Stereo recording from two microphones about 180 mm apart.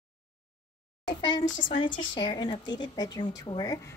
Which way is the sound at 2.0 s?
25° left (ahead or behind).